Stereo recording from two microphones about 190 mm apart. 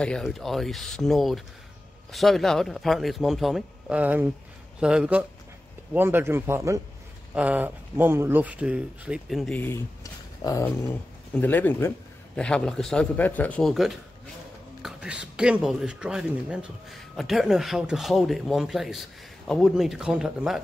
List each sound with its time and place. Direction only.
0.0 s speech: 5° left (ahead or behind)
10.6 s speech: 10° left (ahead or behind)